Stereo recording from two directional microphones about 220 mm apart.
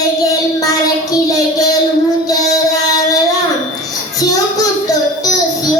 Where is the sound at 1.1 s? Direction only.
15° left (ahead or behind).